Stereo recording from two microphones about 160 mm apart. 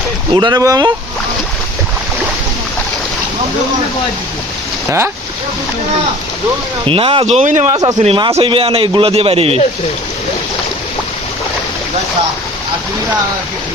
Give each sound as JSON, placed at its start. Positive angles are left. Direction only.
{"t": 0.3, "sound": "speech", "side_deg": -25}
{"t": 6.8, "sound": "a man's voice", "side_deg": -35}
{"t": 8.0, "sound": "a man's voice", "side_deg": -30}